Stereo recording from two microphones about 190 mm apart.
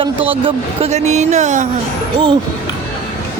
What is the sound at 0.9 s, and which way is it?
Speech, 35° right (ahead or behind).